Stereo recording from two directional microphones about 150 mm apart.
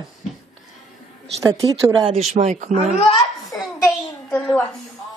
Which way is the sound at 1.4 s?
25° right (ahead or behind).